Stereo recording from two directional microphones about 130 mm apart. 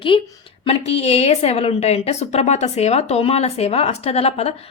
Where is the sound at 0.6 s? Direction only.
50° left (ahead or behind).